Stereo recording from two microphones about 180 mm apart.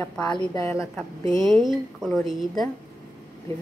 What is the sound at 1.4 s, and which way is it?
Speech, 25° right (ahead or behind).